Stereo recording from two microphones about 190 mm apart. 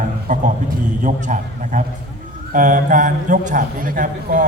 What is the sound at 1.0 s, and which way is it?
A man's voice, 40° right (ahead or behind).